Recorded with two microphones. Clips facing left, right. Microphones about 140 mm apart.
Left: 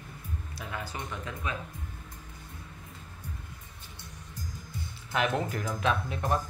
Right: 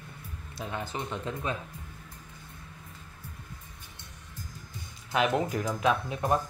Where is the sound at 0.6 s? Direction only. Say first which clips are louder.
Right 4 dB; 25° right (ahead or behind).